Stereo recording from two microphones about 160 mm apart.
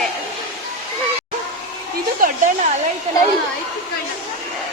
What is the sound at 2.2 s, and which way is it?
Speech, 55° right (ahead or behind).